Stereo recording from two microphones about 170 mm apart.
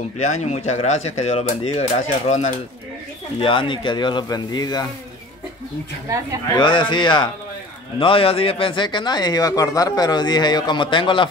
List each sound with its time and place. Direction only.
0.2 s speech: 40° left (ahead or behind)
3.3 s speech: 30° left (ahead or behind)
6.6 s speech: 25° left (ahead or behind)